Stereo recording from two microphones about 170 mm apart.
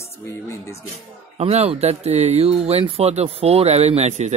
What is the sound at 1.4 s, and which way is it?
Speech, 35° right (ahead or behind).